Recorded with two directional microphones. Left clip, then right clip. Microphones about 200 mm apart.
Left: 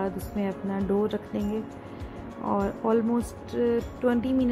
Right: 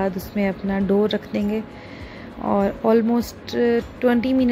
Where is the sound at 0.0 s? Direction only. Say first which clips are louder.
Right 7 dB; 5° right (ahead or behind).